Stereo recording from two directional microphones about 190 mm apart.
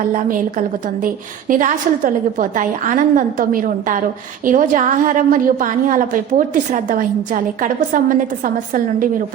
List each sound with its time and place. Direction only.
0.1 s a woman's voice: 45° right (ahead or behind)